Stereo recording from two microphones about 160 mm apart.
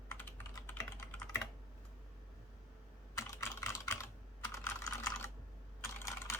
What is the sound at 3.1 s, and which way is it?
Computer keyboard, 20° left (ahead or behind).